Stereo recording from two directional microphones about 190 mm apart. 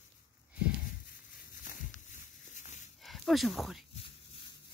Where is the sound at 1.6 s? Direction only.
40° left (ahead or behind).